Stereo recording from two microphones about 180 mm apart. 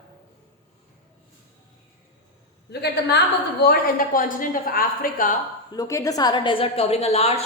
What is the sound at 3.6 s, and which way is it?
A woman's voice, 55° left (ahead or behind).